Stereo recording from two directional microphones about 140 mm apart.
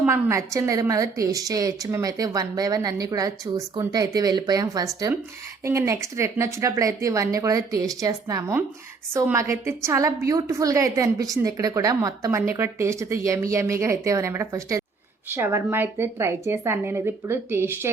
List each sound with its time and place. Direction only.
0.0 s a woman's voice: 20° right (ahead or behind)